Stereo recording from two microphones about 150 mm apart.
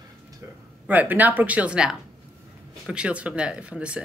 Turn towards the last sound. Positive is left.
turn(degrees=-5)  # may be behind; listen again after turning